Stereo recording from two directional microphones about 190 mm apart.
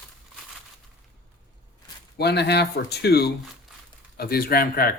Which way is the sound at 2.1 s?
60° left (ahead or behind).